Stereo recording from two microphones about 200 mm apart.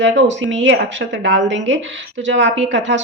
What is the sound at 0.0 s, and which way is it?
Speech, 65° right (ahead or behind).